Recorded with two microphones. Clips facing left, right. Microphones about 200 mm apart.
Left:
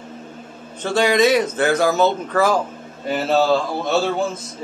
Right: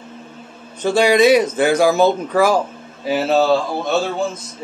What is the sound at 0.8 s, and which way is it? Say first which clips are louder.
Speech: right 3 dB; 10° right (ahead or behind).